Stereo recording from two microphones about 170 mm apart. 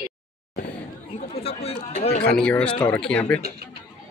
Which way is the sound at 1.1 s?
35° left (ahead or behind).